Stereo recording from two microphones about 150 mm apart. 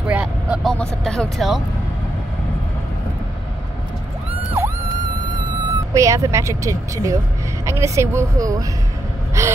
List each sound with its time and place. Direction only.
0.0 s vehicle: 5° right (ahead or behind)
0.7 s speech: 5° left (ahead or behind)
5.9 s speech: 20° right (ahead or behind)